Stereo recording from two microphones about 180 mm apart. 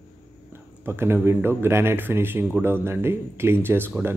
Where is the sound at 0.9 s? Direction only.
15° right (ahead or behind).